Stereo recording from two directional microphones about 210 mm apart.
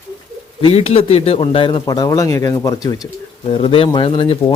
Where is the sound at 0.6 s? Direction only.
30° left (ahead or behind).